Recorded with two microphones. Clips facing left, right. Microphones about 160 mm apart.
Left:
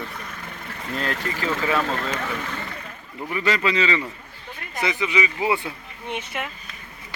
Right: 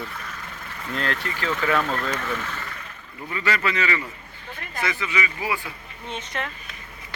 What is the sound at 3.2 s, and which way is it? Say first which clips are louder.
Speech: left 3 dB; 20° left (ahead or behind).